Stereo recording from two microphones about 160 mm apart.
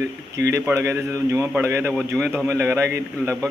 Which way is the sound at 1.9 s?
5° left (ahead or behind).